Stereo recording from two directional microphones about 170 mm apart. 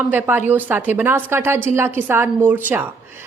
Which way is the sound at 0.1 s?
10° right (ahead or behind).